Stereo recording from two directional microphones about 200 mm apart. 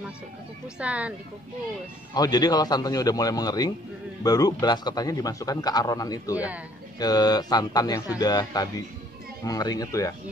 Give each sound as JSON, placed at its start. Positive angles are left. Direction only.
{"t": 0.7, "sound": "speech", "side_deg": -5}
{"t": 2.1, "sound": "a man's voice", "side_deg": 20}
{"t": 6.3, "sound": "speech", "side_deg": -5}
{"t": 7.0, "sound": "a man's voice", "side_deg": 20}